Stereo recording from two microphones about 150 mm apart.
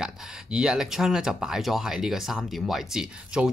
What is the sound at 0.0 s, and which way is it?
Speech, 5° right (ahead or behind).